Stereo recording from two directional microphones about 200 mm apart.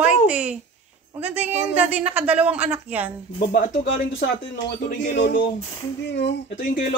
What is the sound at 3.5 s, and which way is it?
Speech, 45° left (ahead or behind).